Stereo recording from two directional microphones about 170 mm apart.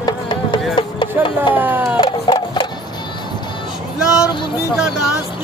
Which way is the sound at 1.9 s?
25° left (ahead or behind).